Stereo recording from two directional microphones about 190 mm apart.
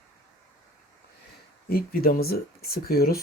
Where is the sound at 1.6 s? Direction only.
55° left (ahead or behind).